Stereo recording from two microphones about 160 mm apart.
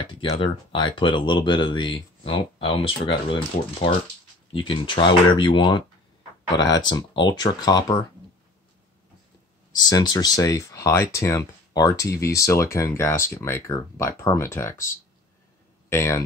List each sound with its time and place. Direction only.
0.0 s speech: 30° left (ahead or behind)
9.8 s speech: 25° left (ahead or behind)
15.9 s speech: 15° left (ahead or behind)